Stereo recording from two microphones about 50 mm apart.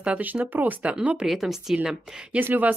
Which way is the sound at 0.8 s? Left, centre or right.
Right.